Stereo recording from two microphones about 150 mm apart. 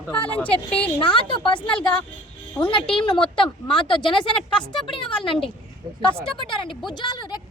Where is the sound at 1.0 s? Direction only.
35° left (ahead or behind).